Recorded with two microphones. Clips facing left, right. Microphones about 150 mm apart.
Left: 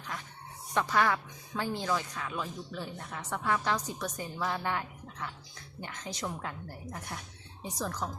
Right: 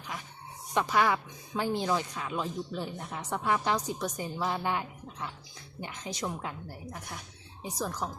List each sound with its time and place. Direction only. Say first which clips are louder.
0.7 s speech: right 1 dB; 15° right (ahead or behind)
7.6 s speech: right 1 dB; 10° right (ahead or behind)